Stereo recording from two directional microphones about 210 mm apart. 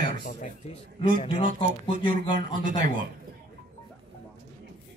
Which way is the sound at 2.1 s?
40° right (ahead or behind).